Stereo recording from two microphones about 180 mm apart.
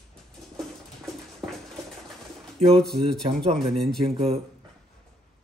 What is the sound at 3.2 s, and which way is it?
Speech, 30° right (ahead or behind).